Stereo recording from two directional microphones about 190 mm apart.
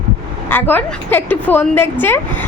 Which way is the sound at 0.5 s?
10° left (ahead or behind).